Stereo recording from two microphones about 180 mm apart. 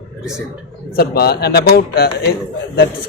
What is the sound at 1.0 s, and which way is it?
A man's voice, 60° left (ahead or behind).